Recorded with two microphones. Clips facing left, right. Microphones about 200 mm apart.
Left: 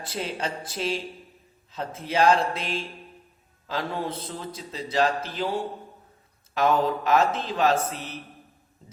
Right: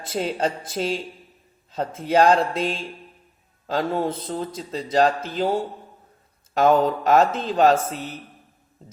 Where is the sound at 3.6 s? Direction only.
45° right (ahead or behind).